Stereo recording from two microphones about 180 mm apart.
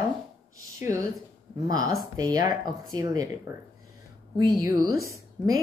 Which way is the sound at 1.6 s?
20° right (ahead or behind).